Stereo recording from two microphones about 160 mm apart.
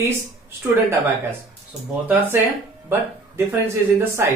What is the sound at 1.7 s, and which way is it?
Speech, 10° right (ahead or behind).